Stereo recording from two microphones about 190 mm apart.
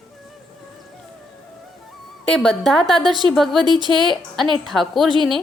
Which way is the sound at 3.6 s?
25° right (ahead or behind).